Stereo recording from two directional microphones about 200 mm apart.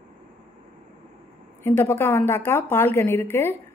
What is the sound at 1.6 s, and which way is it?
Speech, 10° left (ahead or behind).